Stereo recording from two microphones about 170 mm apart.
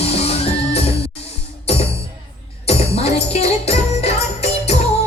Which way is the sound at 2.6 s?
40° left (ahead or behind).